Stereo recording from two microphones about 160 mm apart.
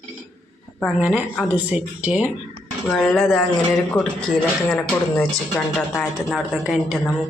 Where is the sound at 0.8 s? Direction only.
Centre (ahead or behind).